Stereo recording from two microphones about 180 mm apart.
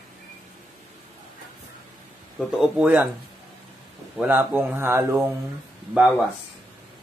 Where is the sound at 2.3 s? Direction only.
Centre (ahead or behind).